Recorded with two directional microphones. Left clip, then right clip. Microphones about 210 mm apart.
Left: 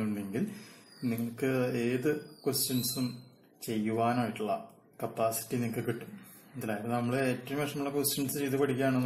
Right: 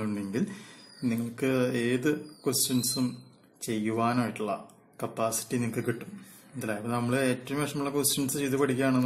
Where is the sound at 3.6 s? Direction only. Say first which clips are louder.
Right 2 dB; 20° right (ahead or behind).